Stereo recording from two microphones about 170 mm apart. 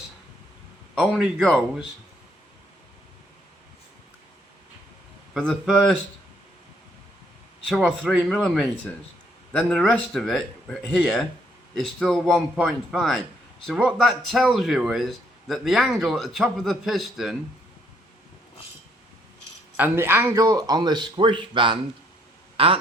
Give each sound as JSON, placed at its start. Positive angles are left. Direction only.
{"t": 0.9, "sound": "a man's voice", "side_deg": -5}
{"t": 5.3, "sound": "a man's voice", "side_deg": 0}
{"t": 7.7, "sound": "a man's voice", "side_deg": 0}
{"t": 19.7, "sound": "a man's voice", "side_deg": -10}